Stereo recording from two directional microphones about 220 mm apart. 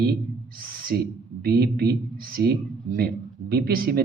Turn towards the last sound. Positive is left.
turn(degrees=-40)  # may be behind; listen again after turning